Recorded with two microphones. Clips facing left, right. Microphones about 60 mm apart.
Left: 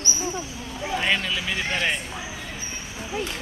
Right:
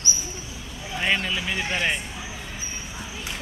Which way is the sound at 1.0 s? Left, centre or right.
Centre.